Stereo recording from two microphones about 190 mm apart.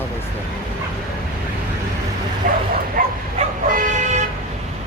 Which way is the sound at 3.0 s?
50° right (ahead or behind).